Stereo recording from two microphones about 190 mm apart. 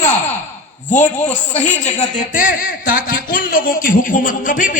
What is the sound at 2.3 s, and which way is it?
Speech, 45° left (ahead or behind).